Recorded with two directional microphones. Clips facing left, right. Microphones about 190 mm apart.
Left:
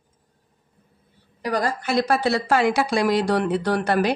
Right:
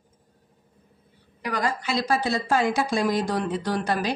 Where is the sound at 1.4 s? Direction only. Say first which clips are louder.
Left 3 dB; 40° left (ahead or behind); by 4.1 s 60° left (ahead or behind).